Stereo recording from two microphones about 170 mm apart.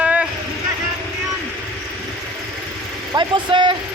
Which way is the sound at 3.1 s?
30° right (ahead or behind).